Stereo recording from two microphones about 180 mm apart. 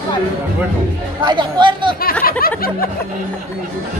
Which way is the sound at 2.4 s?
55° left (ahead or behind).